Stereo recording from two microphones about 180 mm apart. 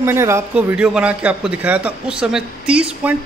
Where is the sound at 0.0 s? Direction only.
15° right (ahead or behind).